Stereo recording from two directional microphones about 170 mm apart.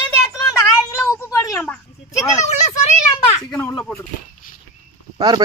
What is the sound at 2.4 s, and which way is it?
Speech, 40° left (ahead or behind).